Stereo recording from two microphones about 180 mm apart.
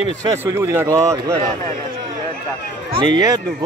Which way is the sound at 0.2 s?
20° right (ahead or behind).